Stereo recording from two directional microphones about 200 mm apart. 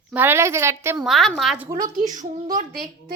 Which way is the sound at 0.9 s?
Centre (ahead or behind).